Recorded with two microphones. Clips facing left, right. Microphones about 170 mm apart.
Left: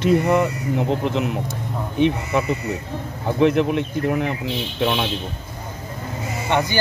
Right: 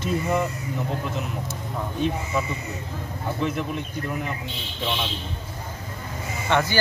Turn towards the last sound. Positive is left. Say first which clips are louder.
# left 2 dB
turn(degrees=15)  # may be behind; listen again after turning